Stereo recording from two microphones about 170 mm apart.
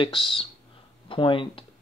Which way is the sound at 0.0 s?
30° left (ahead or behind).